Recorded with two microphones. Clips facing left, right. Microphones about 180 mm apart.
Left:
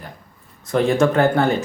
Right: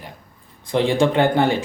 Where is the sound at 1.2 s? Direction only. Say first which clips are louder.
Even; 15° right (ahead or behind).